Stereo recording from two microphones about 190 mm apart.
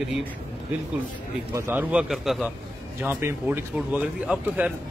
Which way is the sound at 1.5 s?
10° right (ahead or behind).